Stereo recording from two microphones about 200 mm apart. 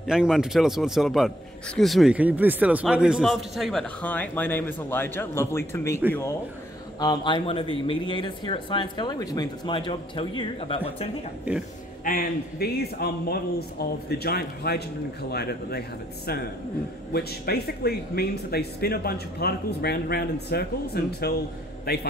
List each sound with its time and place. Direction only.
0.0 s a man's voice: 5° right (ahead or behind); by 5.9 s 15° left (ahead or behind)
7.0 s speech: 20° left (ahead or behind)
12.0 s speech: 50° left (ahead or behind)
17.1 s speech: 50° left (ahead or behind)